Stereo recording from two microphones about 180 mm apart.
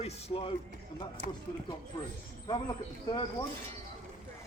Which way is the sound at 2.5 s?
25° left (ahead or behind).